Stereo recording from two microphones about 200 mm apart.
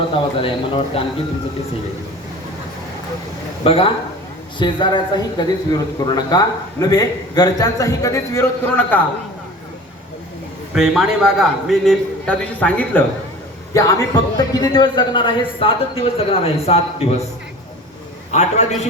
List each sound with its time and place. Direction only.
0.4 s a man's voice: 25° left (ahead or behind)
3.6 s a man's voice: 30° left (ahead or behind); by 9.0 s 10° left (ahead or behind)
10.8 s a man's voice: centre (ahead or behind); by 17.2 s 30° left (ahead or behind)
18.3 s a man's voice: 35° left (ahead or behind)